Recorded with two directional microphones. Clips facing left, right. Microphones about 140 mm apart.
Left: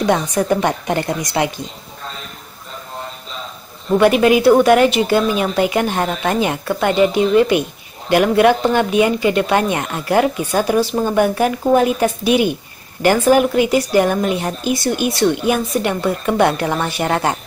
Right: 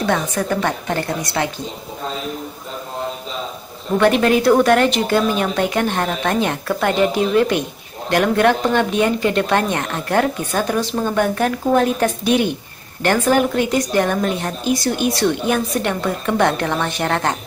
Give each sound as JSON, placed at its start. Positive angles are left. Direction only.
{"t": 0.0, "sound": "a woman's voice", "side_deg": 15}
{"t": 4.0, "sound": "a woman's voice", "side_deg": 5}